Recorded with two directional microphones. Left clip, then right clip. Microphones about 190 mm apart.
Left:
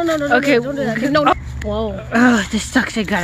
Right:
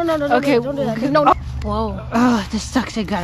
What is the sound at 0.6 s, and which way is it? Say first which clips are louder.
Speech: left 1 dB; 15° left (ahead or behind).